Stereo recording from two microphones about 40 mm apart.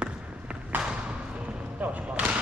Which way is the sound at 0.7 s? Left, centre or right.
Right.